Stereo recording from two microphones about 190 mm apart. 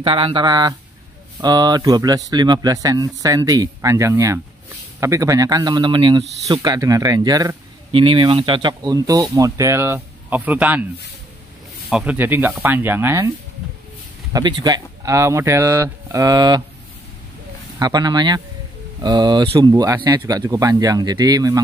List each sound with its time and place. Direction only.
0.0 s speech: 30° right (ahead or behind); by 10.9 s 10° right (ahead or behind)
11.9 s speech: 5° right (ahead or behind)
14.3 s speech: 20° right (ahead or behind)
17.7 s speech: 20° right (ahead or behind)